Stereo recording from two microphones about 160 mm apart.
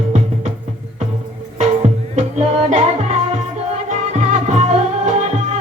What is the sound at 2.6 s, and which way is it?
Music, 45° right (ahead or behind).